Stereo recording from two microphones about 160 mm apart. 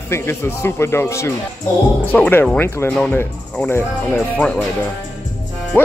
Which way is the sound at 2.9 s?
5° left (ahead or behind).